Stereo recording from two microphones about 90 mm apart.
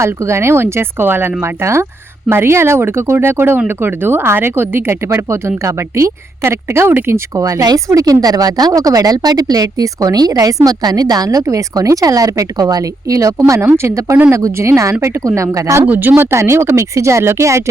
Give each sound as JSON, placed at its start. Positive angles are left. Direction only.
{"t": 0.0, "sound": "speech", "side_deg": -30}
{"t": 15.9, "sound": "speech", "side_deg": -20}